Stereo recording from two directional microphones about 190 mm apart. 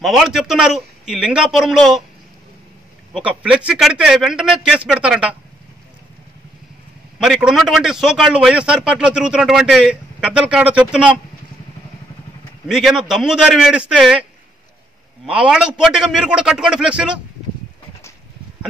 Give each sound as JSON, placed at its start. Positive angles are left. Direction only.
{"t": 0.0, "sound": "a man's voice", "side_deg": 0}
{"t": 3.1, "sound": "a man's voice", "side_deg": -5}
{"t": 7.2, "sound": "a man's voice", "side_deg": -5}
{"t": 12.6, "sound": "a man's voice", "side_deg": 0}
{"t": 15.2, "sound": "a man's voice", "side_deg": -5}